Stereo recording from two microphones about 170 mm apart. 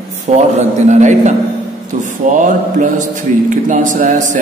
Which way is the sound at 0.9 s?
45° right (ahead or behind).